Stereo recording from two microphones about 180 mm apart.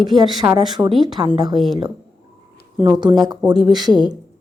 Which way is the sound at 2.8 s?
25° right (ahead or behind).